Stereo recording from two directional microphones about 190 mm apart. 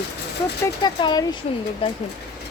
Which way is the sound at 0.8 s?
25° left (ahead or behind).